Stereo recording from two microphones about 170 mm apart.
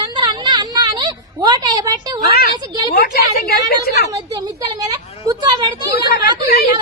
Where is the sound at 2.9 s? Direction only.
65° left (ahead or behind).